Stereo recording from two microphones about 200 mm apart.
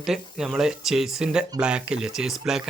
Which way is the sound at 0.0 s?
Centre (ahead or behind).